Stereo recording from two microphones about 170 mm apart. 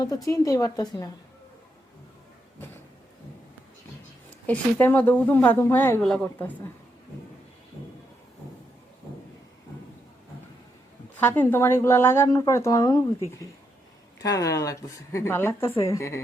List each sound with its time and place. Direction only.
0.0 s a woman's voice: 20° left (ahead or behind)
4.4 s speech: 10° left (ahead or behind)
11.2 s speech: 10° left (ahead or behind)
14.2 s speech: 20° left (ahead or behind)